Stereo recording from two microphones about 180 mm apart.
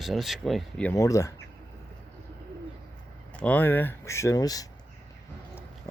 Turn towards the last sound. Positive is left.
turn(degrees=20)  # may be behind; listen again after turning